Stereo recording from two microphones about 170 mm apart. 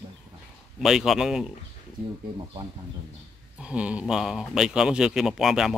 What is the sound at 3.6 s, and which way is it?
Speech, 5° right (ahead or behind).